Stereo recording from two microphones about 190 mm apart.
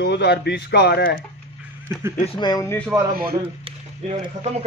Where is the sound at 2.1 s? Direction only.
30° left (ahead or behind).